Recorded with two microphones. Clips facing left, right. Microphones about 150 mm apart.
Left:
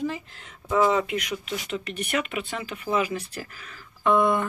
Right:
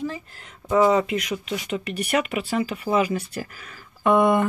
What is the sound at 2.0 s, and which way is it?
Speech, 35° right (ahead or behind).